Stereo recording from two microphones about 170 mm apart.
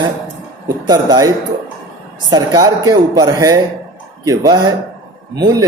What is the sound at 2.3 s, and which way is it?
Speech, 25° right (ahead or behind).